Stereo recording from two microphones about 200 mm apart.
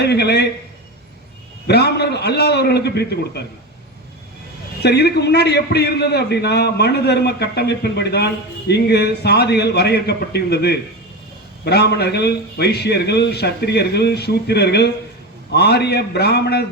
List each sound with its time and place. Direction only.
0.0 s a man's voice: 55° left (ahead or behind)
1.6 s a man's voice: 55° left (ahead or behind)
4.8 s a man's voice: 55° left (ahead or behind)